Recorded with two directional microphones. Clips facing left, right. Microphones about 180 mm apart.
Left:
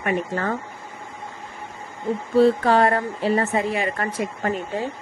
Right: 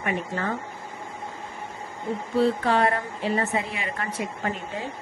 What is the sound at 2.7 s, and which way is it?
A woman's voice, 40° left (ahead or behind).